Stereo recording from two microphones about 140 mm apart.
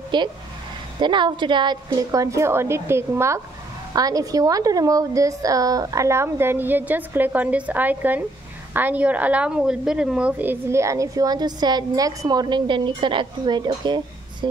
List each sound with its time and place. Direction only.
0.1 s a woman's voice: 35° right (ahead or behind)